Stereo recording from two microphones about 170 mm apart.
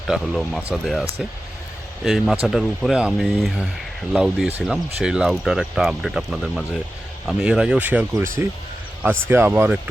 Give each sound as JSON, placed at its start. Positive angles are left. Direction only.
{"t": 0.1, "sound": "speech", "side_deg": 0}
{"t": 2.0, "sound": "speech", "side_deg": 0}